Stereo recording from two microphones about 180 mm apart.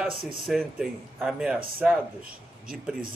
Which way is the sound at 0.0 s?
Centre (ahead or behind).